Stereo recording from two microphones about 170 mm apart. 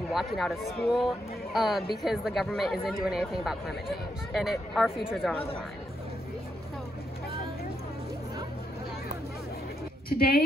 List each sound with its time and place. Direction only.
0.1 s speech: centre (ahead or behind)
10.0 s a woman's voice: 65° left (ahead or behind)